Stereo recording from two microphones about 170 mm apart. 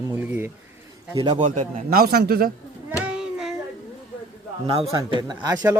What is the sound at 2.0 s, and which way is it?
Speech, 65° right (ahead or behind).